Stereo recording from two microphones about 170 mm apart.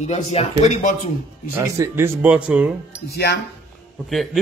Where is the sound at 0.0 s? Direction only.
40° left (ahead or behind).